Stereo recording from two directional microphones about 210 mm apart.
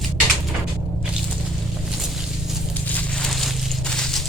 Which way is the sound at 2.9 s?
5° left (ahead or behind).